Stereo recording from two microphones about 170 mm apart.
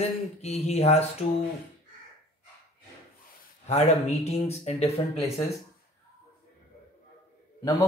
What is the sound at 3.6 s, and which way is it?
Speech, 40° left (ahead or behind).